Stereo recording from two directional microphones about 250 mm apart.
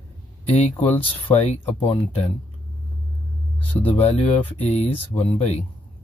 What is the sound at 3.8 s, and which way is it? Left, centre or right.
Speech, left.